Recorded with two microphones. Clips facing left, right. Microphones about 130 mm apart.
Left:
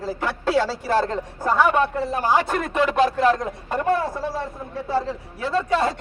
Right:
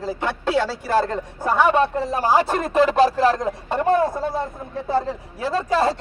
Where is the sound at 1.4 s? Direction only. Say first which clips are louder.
Right 1 dB; 15° right (ahead or behind).